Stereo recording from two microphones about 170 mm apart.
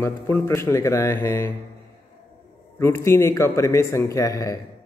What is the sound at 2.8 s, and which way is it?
A man's voice, 15° left (ahead or behind).